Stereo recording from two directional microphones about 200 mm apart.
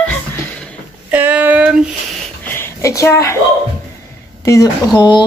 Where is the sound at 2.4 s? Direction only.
10° left (ahead or behind).